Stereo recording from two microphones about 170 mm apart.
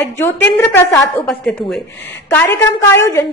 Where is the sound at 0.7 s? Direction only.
15° left (ahead or behind).